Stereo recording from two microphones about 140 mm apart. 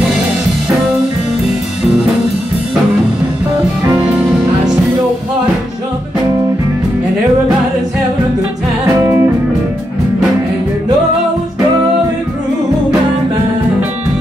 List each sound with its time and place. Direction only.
9.0 s music: 15° right (ahead or behind)